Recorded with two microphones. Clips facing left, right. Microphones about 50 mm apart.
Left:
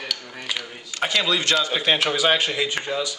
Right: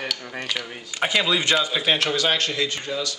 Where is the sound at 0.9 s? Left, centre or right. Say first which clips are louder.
Right 1 dB; centre.